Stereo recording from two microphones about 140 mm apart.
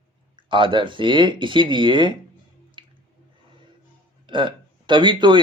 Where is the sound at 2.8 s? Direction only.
35° right (ahead or behind).